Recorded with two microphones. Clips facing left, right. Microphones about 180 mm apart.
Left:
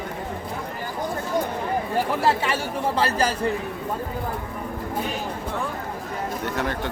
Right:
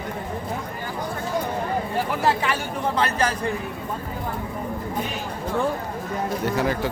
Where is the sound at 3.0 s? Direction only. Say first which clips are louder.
Even; 30° left (ahead or behind).